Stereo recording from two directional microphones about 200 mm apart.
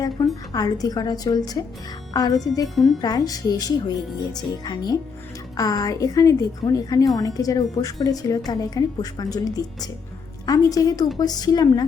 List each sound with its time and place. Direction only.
0.2 s a sound: 15° left (ahead or behind)
0.5 s a woman's voice: 20° left (ahead or behind)
2.7 s speech: centre (ahead or behind)
3.0 s a woman's voice: 20° left (ahead or behind)